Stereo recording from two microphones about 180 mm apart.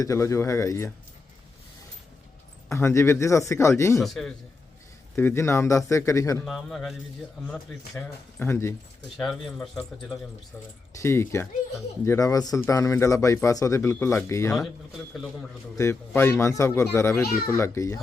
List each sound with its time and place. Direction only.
0.0 s speech: 15° left (ahead or behind)
2.6 s speech: 15° left (ahead or behind)
3.9 s a man's voice: centre (ahead or behind)
5.1 s speech: 15° left (ahead or behind)
6.4 s a man's voice: centre (ahead or behind)
9.1 s a man's voice: centre (ahead or behind)
10.9 s speech: 15° left (ahead or behind)
15.1 s a man's voice: centre (ahead or behind)
15.8 s speech: 15° left (ahead or behind)